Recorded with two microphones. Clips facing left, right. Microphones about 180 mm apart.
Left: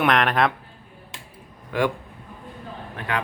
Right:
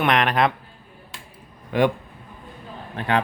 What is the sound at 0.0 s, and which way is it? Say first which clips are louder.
Speech: even; centre (ahead or behind).